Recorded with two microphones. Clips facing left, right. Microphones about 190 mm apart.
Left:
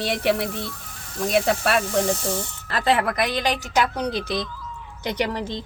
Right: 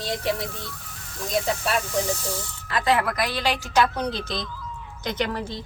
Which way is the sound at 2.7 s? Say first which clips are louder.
Left 1 dB; 35° left (ahead or behind).